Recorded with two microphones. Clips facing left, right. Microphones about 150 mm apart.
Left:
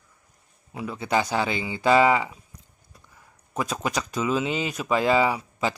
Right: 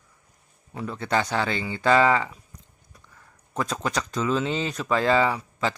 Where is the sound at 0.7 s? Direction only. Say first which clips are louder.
Left 1 dB; 10° left (ahead or behind).